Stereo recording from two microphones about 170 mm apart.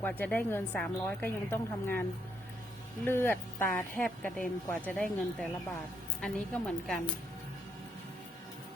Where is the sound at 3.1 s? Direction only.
15° left (ahead or behind).